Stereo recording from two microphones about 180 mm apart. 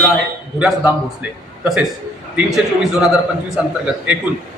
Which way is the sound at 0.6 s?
5° right (ahead or behind).